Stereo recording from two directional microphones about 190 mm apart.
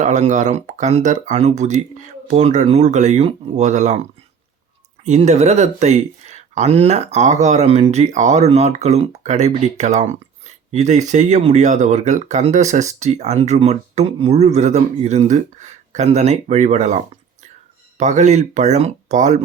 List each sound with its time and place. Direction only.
0.0 s speech: 40° right (ahead or behind)
5.0 s speech: 35° right (ahead or behind)